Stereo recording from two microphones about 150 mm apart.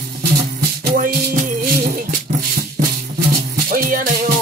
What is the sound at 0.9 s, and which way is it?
Music, 65° right (ahead or behind).